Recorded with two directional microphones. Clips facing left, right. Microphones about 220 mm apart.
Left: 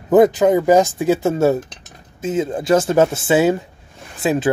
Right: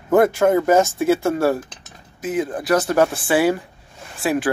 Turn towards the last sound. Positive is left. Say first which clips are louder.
# left 3 dB
turn(degrees=20)  # may be behind; listen again after turning